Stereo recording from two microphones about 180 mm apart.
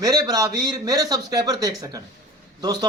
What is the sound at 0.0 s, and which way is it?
Speech, 20° right (ahead or behind).